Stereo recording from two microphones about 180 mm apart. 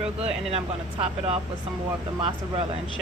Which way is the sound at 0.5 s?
35° right (ahead or behind).